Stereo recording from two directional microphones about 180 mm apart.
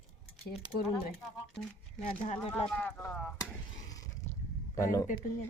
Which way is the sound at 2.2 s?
40° left (ahead or behind).